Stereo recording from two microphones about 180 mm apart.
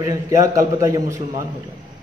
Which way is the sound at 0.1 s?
15° right (ahead or behind).